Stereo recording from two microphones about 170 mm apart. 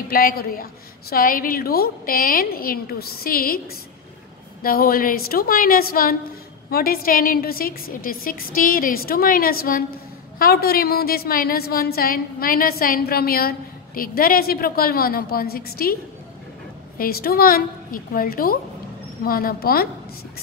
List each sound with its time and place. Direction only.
0.1 s a woman's voice: 60° left (ahead or behind)
4.6 s a woman's voice: 60° left (ahead or behind)
17.0 s a woman's voice: 65° left (ahead or behind)